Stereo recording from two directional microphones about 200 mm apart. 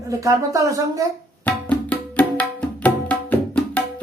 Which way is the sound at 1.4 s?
5° left (ahead or behind).